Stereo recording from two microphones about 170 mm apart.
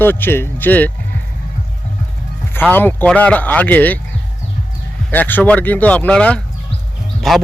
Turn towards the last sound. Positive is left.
turn(degrees=0)  # may be behind; listen again after turning